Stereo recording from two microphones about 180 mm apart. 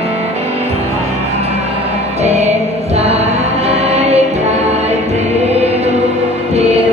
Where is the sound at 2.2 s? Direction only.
40° right (ahead or behind).